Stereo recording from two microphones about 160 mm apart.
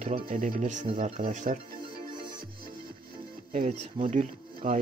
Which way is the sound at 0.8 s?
40° right (ahead or behind).